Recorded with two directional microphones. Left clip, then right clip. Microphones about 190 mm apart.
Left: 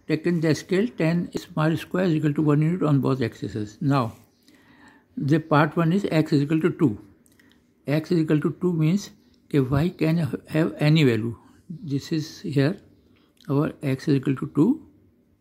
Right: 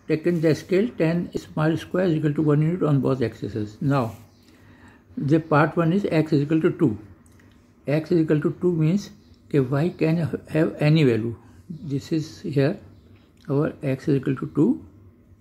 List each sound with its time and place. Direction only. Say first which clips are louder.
0.0 s speech: right 3 dB; 45° left (ahead or behind)